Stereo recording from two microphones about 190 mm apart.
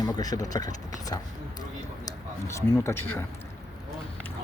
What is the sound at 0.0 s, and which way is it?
Speech, 20° left (ahead or behind).